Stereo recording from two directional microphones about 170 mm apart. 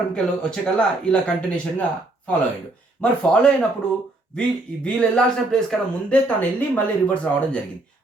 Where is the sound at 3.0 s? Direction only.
5° left (ahead or behind).